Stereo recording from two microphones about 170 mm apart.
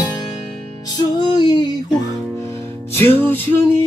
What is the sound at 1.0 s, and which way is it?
Music, 25° left (ahead or behind).